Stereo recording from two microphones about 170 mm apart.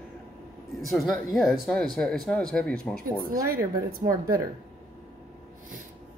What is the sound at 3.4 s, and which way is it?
Speech, 60° right (ahead or behind).